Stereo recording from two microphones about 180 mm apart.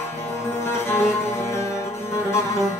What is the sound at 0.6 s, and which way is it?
Music, 15° left (ahead or behind).